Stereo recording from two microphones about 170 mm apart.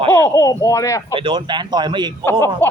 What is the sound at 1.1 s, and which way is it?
Speech, 30° right (ahead or behind).